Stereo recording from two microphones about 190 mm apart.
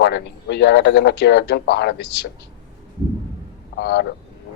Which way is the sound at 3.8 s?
60° left (ahead or behind).